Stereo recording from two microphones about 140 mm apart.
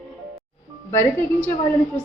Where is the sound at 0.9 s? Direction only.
15° left (ahead or behind).